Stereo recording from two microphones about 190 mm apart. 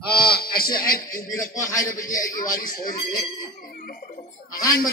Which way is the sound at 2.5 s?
45° left (ahead or behind).